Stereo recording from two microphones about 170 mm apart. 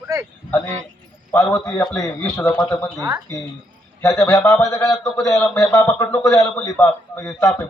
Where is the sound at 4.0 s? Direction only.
15° left (ahead or behind).